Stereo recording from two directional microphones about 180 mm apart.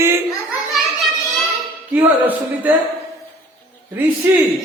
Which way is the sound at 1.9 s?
10° right (ahead or behind).